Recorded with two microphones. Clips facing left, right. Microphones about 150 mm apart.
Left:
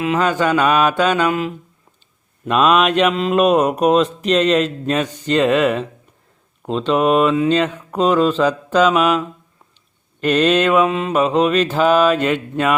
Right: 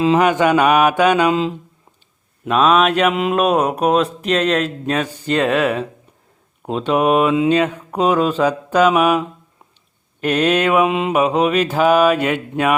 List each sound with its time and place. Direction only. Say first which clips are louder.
0.2 s mantra: right 2 dB; 15° right (ahead or behind)
1.3 s speech: right 3 dB; 25° right (ahead or behind)
2.4 s speech: even; centre (ahead or behind)
6.7 s mantra: even; 10° right (ahead or behind)